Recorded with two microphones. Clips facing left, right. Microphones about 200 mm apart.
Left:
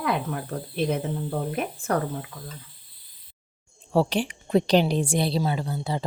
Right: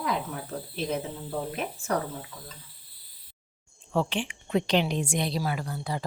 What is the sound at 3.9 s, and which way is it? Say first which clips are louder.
A woman's voice: left 5 dB; 35° left (ahead or behind).